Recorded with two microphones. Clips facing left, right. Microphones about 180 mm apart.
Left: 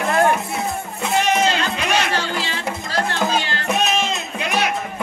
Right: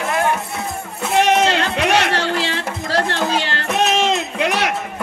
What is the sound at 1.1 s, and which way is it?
Music, 75° right (ahead or behind).